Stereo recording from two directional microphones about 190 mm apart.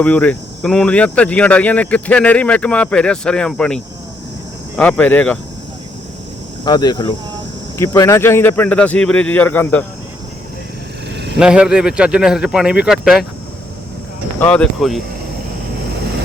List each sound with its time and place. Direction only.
0.0 s speech: 5° left (ahead or behind)
4.8 s speech: 10° left (ahead or behind)
6.7 s speech: 20° left (ahead or behind)
11.1 s a sound: 65° right (ahead or behind)
11.3 s speech: 5° right (ahead or behind)
14.3 s speech: 5° left (ahead or behind)